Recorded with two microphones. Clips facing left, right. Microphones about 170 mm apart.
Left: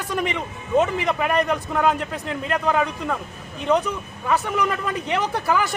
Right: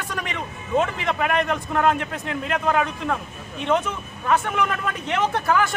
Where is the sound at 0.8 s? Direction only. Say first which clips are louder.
Left 2 dB; 5° left (ahead or behind).